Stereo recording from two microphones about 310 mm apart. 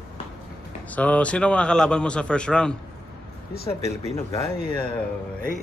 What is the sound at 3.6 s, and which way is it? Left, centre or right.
Speech, centre.